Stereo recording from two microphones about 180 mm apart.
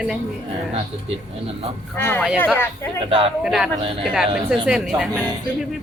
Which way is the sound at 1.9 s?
10° left (ahead or behind).